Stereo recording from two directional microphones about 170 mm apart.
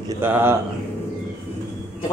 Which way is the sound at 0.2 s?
15° right (ahead or behind).